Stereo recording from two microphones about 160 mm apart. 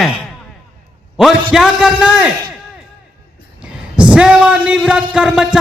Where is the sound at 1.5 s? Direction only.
5° right (ahead or behind).